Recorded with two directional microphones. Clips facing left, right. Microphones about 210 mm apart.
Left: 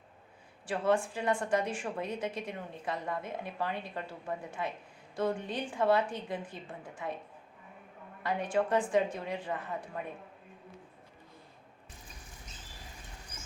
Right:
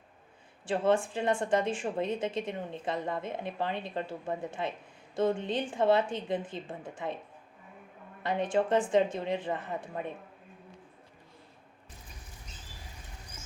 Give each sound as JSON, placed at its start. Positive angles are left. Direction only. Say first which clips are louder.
{"t": 0.6, "sound": "a woman's voice", "louder": "right 2 dB", "side_deg": -25}
{"t": 8.2, "sound": "a woman's voice", "louder": "right 2 dB", "side_deg": -25}